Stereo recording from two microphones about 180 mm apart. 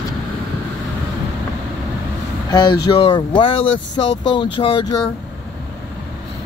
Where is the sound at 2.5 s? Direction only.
25° left (ahead or behind).